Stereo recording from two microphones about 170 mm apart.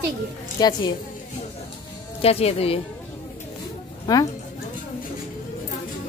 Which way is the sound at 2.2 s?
35° left (ahead or behind).